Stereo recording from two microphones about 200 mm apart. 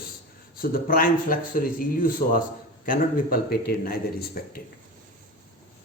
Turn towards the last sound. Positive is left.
turn(degrees=50)  # may be behind; listen again after turning